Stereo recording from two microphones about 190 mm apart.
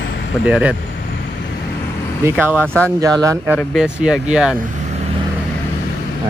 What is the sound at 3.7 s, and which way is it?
Speech, 5° right (ahead or behind).